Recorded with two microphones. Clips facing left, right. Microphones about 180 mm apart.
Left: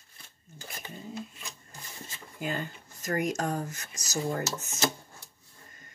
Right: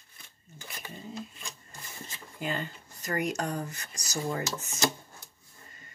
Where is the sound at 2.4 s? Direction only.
45° left (ahead or behind).